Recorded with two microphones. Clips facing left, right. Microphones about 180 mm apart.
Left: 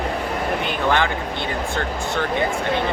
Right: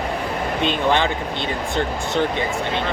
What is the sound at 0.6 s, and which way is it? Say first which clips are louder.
Speech: right 3 dB; 20° right (ahead or behind).